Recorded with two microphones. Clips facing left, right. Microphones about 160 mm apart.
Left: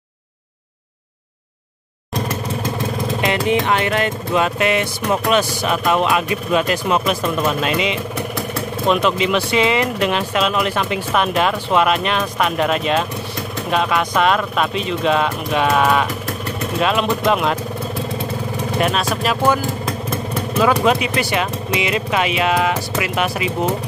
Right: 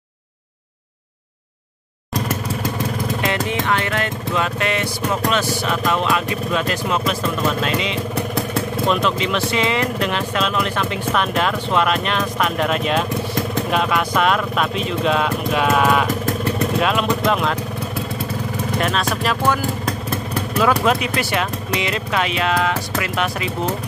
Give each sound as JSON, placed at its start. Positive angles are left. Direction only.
{"t": 3.2, "sound": "speech", "side_deg": 20}
{"t": 18.8, "sound": "speech", "side_deg": 5}
{"t": 20.5, "sound": "speech", "side_deg": 0}